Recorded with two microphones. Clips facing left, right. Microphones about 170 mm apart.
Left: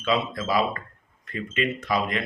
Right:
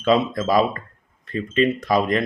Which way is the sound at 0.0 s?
45° right (ahead or behind).